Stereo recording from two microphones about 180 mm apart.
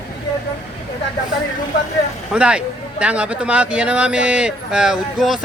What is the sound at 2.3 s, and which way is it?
A man's voice, 5° right (ahead or behind).